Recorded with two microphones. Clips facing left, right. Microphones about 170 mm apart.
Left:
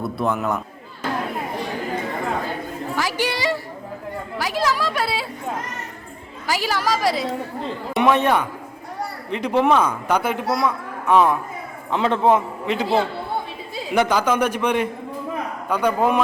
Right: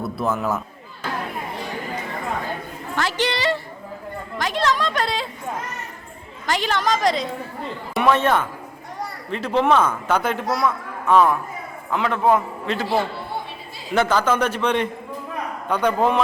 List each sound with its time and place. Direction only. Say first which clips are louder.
0.0 s a man's voice: left 1 dB; centre (ahead or behind)
2.9 s a man's voice: right 1 dB; 10° left (ahead or behind)
6.5 s a woman's voice: right 1 dB; 5° left (ahead or behind)
7.9 s a man's voice: left 1 dB; 15° left (ahead or behind)